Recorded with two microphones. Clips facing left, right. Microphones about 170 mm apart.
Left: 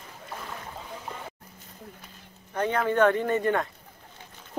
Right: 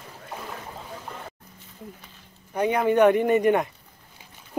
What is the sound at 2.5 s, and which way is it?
Speech, 15° right (ahead or behind).